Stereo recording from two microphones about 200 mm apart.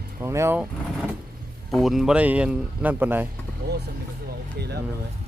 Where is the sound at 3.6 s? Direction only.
50° right (ahead or behind).